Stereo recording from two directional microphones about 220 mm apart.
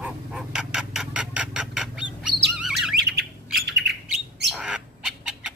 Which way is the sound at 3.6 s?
50° right (ahead or behind).